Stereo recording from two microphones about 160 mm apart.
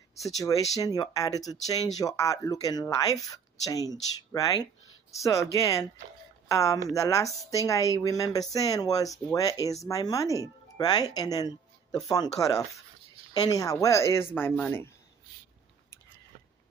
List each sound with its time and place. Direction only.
0.4 s speech: 20° left (ahead or behind)